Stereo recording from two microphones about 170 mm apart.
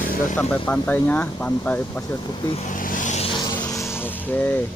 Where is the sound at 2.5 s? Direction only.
50° left (ahead or behind).